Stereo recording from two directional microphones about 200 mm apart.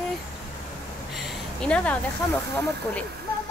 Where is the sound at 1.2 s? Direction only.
Centre (ahead or behind).